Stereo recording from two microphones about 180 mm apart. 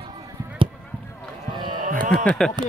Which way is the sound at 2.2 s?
5° left (ahead or behind).